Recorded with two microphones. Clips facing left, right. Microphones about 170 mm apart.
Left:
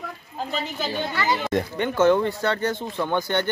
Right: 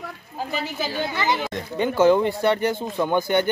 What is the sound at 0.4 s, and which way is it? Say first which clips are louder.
Speech: right 1 dB; 5° right (ahead or behind).